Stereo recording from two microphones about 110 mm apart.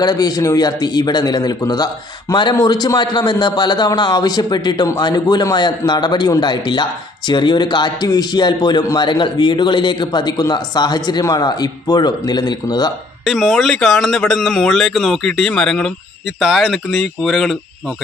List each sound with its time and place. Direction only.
0.0 s a man's voice: 35° left (ahead or behind)
13.2 s speech: centre (ahead or behind)